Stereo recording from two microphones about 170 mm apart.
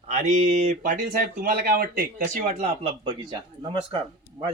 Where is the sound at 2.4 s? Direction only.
35° right (ahead or behind).